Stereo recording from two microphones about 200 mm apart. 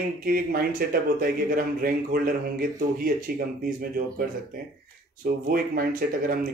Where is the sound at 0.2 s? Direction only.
45° right (ahead or behind).